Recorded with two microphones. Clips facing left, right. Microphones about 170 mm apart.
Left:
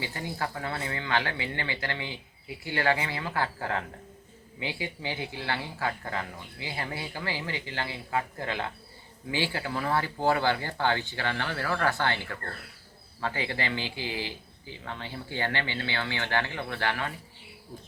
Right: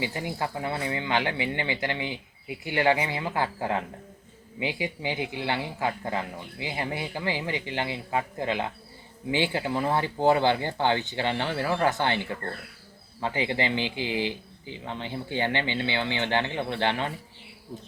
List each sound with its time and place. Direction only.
0.0 s speech: 20° right (ahead or behind)